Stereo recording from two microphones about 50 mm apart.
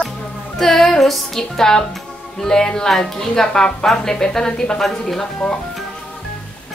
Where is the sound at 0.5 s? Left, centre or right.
Centre.